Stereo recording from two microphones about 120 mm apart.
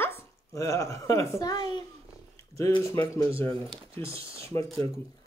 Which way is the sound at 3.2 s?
20° left (ahead or behind).